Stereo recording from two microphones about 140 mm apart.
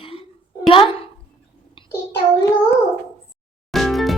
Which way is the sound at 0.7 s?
40° left (ahead or behind).